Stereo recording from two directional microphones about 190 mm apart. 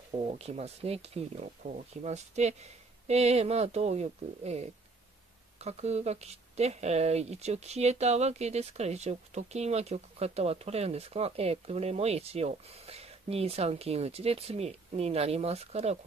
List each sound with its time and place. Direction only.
0.2 s speech: 30° right (ahead or behind)